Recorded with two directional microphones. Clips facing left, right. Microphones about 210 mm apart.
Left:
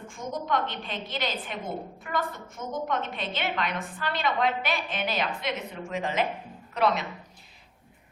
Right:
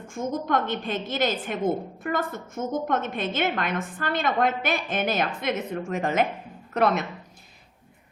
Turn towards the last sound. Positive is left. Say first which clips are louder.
# right 3 dB
turn(degrees=-50)  # may be behind; listen again after turning